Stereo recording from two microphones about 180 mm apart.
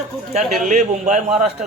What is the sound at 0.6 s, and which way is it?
A man's voice, 40° right (ahead or behind).